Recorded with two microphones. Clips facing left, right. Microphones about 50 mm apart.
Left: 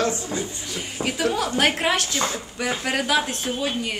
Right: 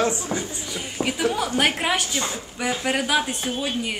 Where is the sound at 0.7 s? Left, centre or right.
Centre.